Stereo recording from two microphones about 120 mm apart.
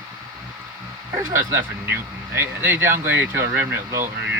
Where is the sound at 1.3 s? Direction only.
20° right (ahead or behind).